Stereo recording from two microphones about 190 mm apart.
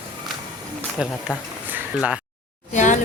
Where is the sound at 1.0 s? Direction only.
5° right (ahead or behind).